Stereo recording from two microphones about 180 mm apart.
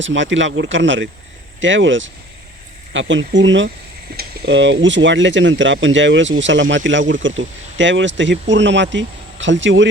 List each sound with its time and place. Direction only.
0.0 s speech: 90° right